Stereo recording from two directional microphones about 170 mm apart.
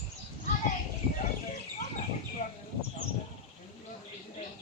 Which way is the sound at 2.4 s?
50° left (ahead or behind).